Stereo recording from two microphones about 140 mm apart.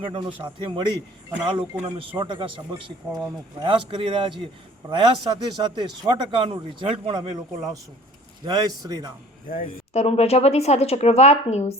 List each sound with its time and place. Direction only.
0.0 s speech: 35° right (ahead or behind)
8.4 s a man's voice: 25° right (ahead or behind)
9.9 s speech: 50° left (ahead or behind)